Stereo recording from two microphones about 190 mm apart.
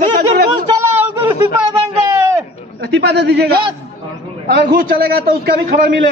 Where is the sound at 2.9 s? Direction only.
60° right (ahead or behind).